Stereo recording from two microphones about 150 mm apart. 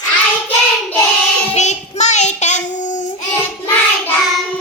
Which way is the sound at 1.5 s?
50° left (ahead or behind).